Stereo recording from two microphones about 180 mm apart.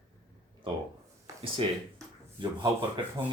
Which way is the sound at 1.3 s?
15° right (ahead or behind).